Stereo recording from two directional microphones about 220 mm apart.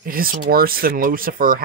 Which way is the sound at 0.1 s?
40° right (ahead or behind).